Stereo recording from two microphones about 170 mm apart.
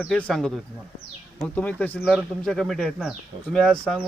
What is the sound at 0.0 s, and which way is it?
Speech, 5° left (ahead or behind).